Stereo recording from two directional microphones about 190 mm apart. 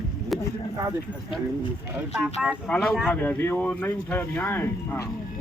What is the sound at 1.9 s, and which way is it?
Speech, 5° right (ahead or behind).